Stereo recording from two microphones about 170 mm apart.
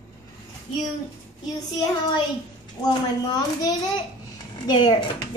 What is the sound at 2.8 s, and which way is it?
A child's voice, 25° left (ahead or behind).